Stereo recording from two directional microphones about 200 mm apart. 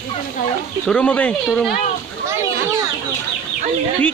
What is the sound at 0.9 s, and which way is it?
Speech, 5° left (ahead or behind).